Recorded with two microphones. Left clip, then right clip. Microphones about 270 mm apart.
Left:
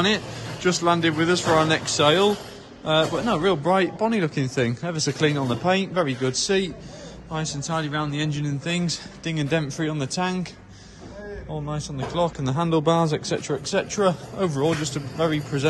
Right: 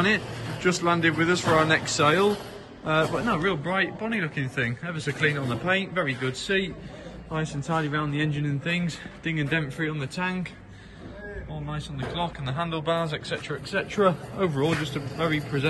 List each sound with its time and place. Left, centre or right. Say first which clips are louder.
0.6 s speech: left 3 dB; centre
7.6 s speech: even; centre
11.7 s speech: left 4 dB; centre